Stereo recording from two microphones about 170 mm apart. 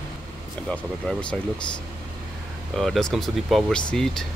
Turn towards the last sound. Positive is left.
turn(degrees=0)  # may be behind; listen again after turning